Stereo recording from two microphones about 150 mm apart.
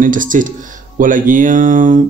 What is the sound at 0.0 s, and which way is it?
Speech, 60° right (ahead or behind).